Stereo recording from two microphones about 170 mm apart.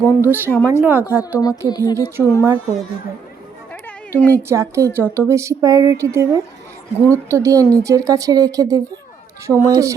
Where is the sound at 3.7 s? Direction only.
10° left (ahead or behind).